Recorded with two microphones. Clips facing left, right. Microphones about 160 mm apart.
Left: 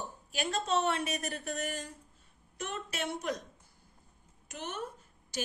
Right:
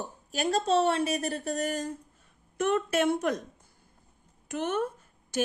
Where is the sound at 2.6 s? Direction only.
55° right (ahead or behind).